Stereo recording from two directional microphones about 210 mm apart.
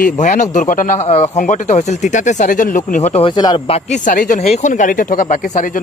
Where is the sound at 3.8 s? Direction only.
40° left (ahead or behind).